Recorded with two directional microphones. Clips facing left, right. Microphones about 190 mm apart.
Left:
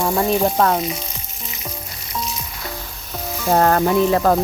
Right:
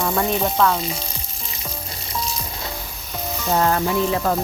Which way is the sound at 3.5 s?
45° left (ahead or behind).